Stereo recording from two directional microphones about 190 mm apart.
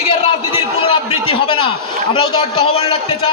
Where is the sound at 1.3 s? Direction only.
25° left (ahead or behind).